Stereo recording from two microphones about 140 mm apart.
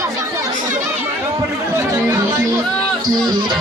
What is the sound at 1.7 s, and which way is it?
Speech, 25° right (ahead or behind).